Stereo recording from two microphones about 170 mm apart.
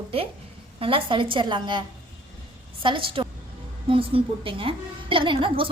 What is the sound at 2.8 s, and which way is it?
A woman's voice, 30° right (ahead or behind).